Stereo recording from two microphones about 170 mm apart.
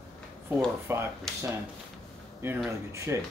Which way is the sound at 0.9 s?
15° right (ahead or behind).